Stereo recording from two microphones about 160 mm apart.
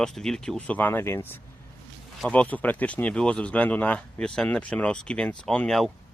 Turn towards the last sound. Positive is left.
turn(degrees=0)  # may be behind; listen again after turning